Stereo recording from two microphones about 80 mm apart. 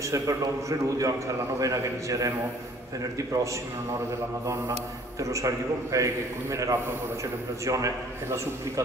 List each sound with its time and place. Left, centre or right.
0.1 s a man's voice: right
5.2 s a man's voice: right